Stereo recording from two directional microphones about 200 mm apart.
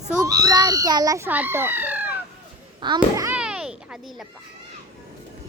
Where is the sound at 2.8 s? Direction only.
20° right (ahead or behind).